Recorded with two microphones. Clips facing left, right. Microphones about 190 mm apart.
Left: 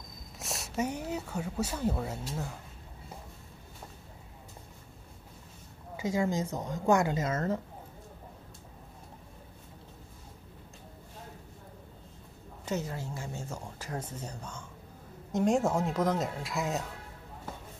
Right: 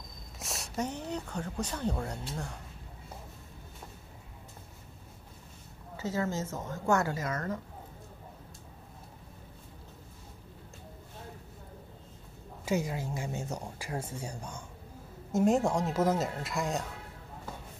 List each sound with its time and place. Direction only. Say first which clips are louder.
0.4 s speech: left 2 dB; centre (ahead or behind)
5.9 s speech: left 3 dB; 15° left (ahead or behind)
12.6 s speech: right 3 dB; 10° right (ahead or behind)